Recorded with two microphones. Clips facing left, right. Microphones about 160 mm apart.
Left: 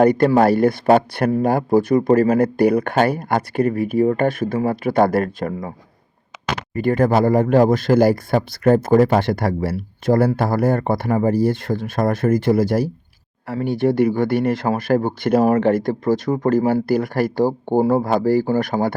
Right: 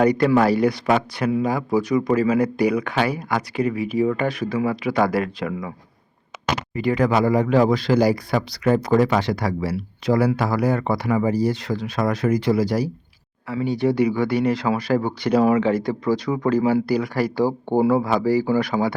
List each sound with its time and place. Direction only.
0.0 s speech: 50° left (ahead or behind)
6.7 s speech: 50° left (ahead or behind)
9.2 s speech: 55° left (ahead or behind)